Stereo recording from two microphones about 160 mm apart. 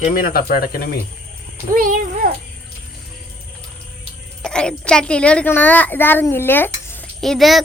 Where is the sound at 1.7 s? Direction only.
55° right (ahead or behind).